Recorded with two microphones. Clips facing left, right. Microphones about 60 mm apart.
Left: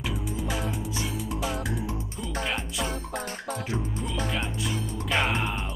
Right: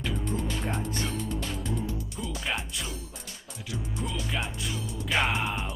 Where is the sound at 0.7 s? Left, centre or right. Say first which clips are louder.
Even; right.